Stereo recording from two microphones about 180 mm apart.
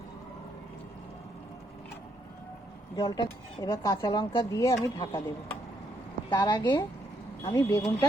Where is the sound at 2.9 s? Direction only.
20° left (ahead or behind).